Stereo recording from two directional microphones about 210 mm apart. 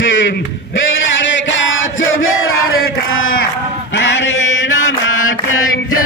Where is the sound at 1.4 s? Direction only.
65° left (ahead or behind).